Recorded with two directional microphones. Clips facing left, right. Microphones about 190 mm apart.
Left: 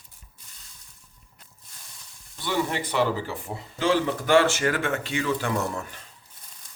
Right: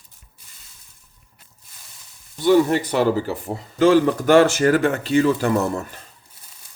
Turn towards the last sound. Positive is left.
turn(degrees=-40)  # may be behind; listen again after turning